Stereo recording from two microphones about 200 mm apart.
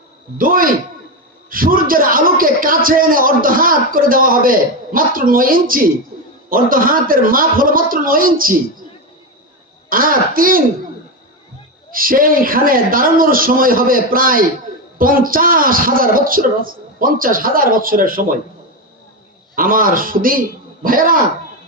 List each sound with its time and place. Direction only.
0.3 s a man's voice: 45° right (ahead or behind)
9.9 s a man's voice: 45° right (ahead or behind)
11.9 s a man's voice: 45° right (ahead or behind)
19.5 s a man's voice: 45° right (ahead or behind)